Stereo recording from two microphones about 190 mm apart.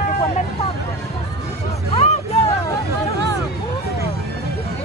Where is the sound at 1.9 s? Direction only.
35° left (ahead or behind).